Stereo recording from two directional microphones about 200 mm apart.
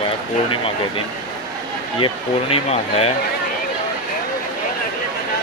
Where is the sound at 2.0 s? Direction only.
30° left (ahead or behind).